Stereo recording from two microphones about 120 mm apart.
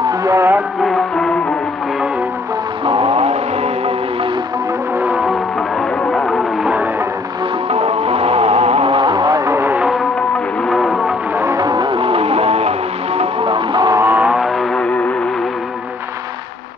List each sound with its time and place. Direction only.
0.2 s a sound: 25° right (ahead or behind)
0.8 s music: centre (ahead or behind)
2.8 s music: 50° right (ahead or behind)
4.9 s music: 10° right (ahead or behind)
5.2 s music: centre (ahead or behind)
7.7 s music: 55° right (ahead or behind); by 9.8 s 20° right (ahead or behind)
9.8 s music: centre (ahead or behind)
11.3 s music: 25° right (ahead or behind); by 13.9 s 40° right (ahead or behind)
13.9 s a sound: 15° right (ahead or behind); by 15.0 s 5° left (ahead or behind)